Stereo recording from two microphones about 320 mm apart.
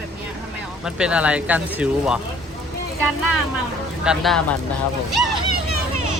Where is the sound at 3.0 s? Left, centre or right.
Right.